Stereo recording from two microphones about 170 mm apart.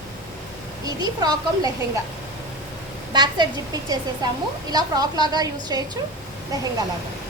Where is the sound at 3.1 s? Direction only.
25° right (ahead or behind).